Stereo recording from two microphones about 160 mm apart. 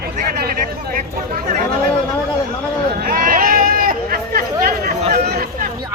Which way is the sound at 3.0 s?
60° right (ahead or behind).